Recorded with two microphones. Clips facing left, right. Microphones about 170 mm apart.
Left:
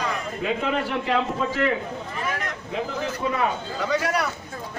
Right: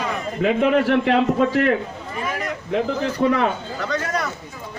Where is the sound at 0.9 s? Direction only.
65° right (ahead or behind).